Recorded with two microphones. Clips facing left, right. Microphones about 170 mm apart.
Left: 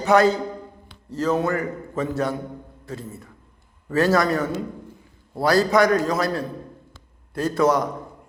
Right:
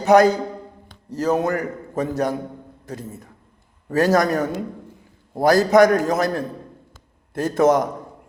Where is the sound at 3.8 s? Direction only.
40° right (ahead or behind).